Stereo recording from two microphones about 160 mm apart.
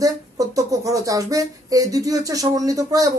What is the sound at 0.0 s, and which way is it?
Speech, 20° right (ahead or behind).